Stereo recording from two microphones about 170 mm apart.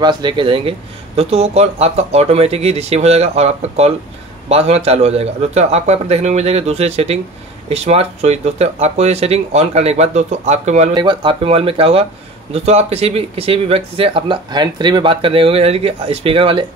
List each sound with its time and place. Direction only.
0.0 s speech: 25° right (ahead or behind)
11.0 s speech: 30° right (ahead or behind)